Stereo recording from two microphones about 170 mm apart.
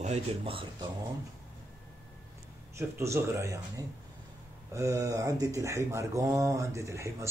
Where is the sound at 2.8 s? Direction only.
15° right (ahead or behind).